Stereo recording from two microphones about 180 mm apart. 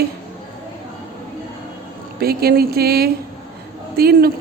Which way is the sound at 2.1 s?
60° right (ahead or behind).